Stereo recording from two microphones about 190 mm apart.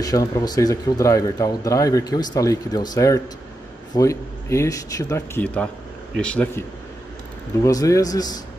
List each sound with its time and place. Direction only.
0.0 s speech: 20° left (ahead or behind)
7.6 s speech: 15° left (ahead or behind)